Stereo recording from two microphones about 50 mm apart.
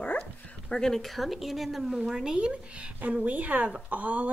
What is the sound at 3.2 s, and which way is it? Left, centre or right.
Speech, right.